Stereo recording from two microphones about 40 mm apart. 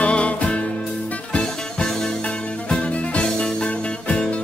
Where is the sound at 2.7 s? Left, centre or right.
Left.